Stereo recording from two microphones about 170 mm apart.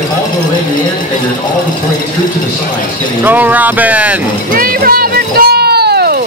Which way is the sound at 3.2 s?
10° right (ahead or behind).